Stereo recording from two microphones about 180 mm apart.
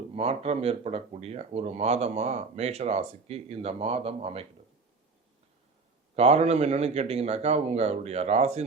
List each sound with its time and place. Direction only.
0.1 s speech: 35° right (ahead or behind)
6.1 s speech: 35° right (ahead or behind)